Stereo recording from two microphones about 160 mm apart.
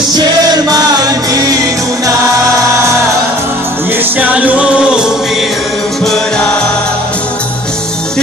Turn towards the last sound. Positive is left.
turn(degrees=5)  # may be behind; listen again after turning